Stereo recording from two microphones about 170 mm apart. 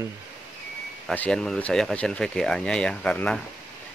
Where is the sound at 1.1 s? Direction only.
5° left (ahead or behind).